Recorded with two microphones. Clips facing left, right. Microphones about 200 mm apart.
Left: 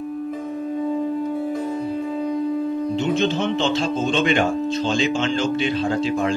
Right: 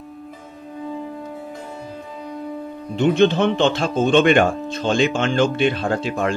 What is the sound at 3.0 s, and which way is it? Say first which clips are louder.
Speech: right 8 dB; 60° right (ahead or behind).